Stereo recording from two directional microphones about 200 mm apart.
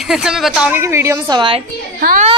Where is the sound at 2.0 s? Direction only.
45° right (ahead or behind).